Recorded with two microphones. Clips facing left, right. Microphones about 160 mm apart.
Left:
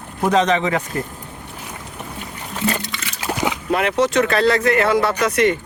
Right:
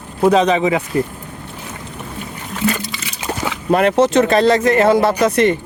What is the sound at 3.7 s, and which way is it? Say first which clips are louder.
Speech: right 7 dB; 45° right (ahead or behind).